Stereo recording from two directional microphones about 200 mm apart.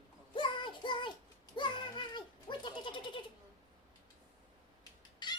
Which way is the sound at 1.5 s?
25° left (ahead or behind).